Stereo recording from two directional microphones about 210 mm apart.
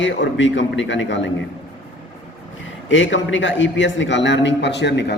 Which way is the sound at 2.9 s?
60° left (ahead or behind).